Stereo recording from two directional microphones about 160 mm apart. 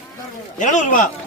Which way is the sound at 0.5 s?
50° left (ahead or behind).